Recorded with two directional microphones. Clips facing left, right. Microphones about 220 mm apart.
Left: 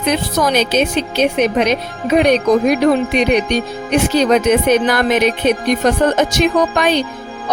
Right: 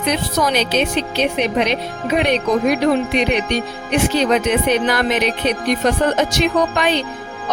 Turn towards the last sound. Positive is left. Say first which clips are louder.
# left 3 dB
turn(degrees=45)  # may be behind; listen again after turning